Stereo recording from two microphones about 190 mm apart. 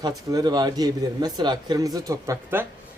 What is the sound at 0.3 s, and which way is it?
Speech, 20° right (ahead or behind).